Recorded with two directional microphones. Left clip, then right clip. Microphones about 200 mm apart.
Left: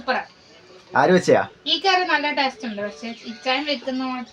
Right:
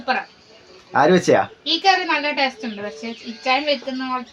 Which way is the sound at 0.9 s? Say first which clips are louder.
Right 1 dB; 15° right (ahead or behind).